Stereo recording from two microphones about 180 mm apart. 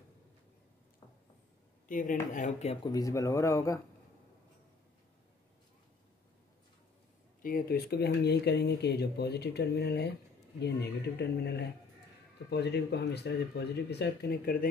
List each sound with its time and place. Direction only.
1.9 s speech: 45° left (ahead or behind)
2.8 s speech: 20° left (ahead or behind)
7.4 s speech: 55° left (ahead or behind)